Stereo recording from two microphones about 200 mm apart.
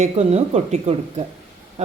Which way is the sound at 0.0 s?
30° right (ahead or behind).